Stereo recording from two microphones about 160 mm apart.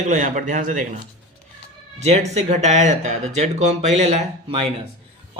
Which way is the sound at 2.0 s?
45° right (ahead or behind).